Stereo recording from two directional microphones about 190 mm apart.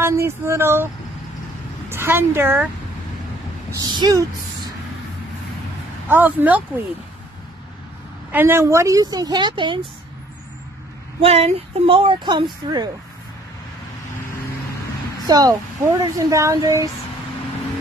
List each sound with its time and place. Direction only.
0.0 s speech: 15° right (ahead or behind)
1.9 s speech: 15° right (ahead or behind)
3.7 s speech: 20° right (ahead or behind)
6.0 s speech: 10° right (ahead or behind)
8.3 s speech: 10° right (ahead or behind)
11.1 s speech: 30° right (ahead or behind)
15.2 s speech: 20° right (ahead or behind)